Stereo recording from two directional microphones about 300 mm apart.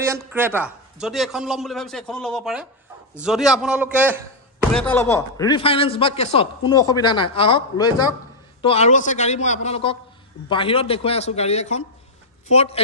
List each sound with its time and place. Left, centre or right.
0.0 s a man's voice: centre
4.8 s a man's voice: centre